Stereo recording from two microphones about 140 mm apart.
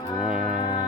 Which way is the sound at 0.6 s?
35° left (ahead or behind).